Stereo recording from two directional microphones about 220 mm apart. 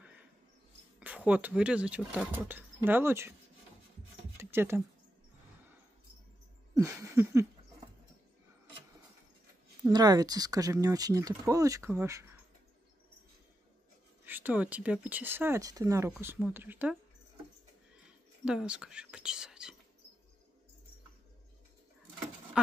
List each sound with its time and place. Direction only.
0.9 s speech: 5° right (ahead or behind)
4.4 s a sound: 10° right (ahead or behind)
6.7 s a sound: 15° right (ahead or behind)
9.8 s speech: 15° right (ahead or behind)
14.2 s speech: 10° right (ahead or behind)
18.4 s speech: 5° right (ahead or behind)